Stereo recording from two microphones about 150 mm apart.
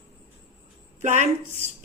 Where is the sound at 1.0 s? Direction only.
55° right (ahead or behind).